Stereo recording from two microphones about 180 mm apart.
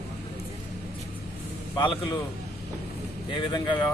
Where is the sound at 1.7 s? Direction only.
25° left (ahead or behind).